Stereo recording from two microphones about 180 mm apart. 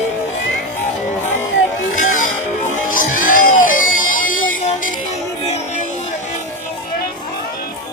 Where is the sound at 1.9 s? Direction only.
45° left (ahead or behind).